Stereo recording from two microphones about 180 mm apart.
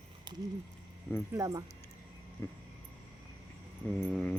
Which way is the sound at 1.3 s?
20° right (ahead or behind).